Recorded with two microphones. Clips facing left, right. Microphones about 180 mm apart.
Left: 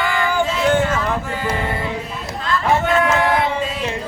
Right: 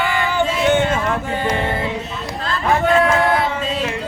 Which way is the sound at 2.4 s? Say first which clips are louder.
Even; 30° right (ahead or behind).